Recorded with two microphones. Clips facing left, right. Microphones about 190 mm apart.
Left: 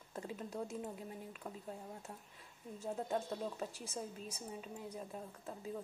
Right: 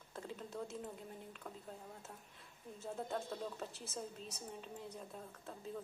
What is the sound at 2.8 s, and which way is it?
A woman's voice, 15° left (ahead or behind).